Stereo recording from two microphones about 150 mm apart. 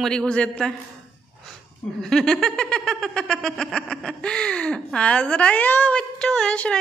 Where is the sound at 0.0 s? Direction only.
5° left (ahead or behind).